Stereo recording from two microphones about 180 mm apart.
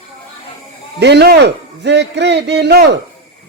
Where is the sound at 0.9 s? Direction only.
70° right (ahead or behind).